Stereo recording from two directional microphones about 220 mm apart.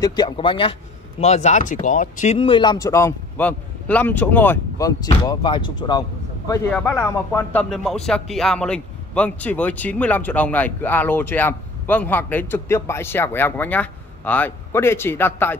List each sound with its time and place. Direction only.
0.0 s speech: 20° left (ahead or behind)
6.7 s speech: 5° left (ahead or behind)